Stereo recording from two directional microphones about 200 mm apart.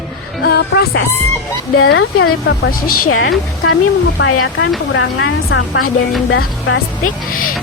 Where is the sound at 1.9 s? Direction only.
80° left.